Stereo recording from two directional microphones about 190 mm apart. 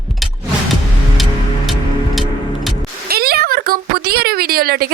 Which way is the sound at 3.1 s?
55° right (ahead or behind).